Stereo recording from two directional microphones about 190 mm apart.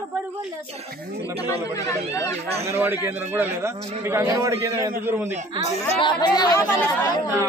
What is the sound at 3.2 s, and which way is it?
Speech, 10° right (ahead or behind).